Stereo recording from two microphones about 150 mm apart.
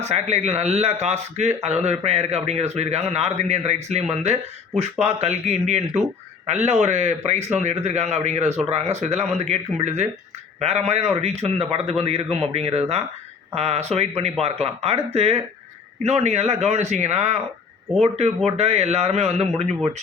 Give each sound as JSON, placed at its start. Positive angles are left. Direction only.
{"t": 0.0, "sound": "speech", "side_deg": -45}